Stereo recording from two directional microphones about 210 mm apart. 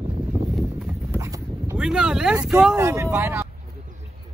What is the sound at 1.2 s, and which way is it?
Dog, 15° right (ahead or behind).